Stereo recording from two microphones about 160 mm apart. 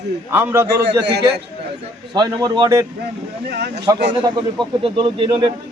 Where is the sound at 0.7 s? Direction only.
90° right.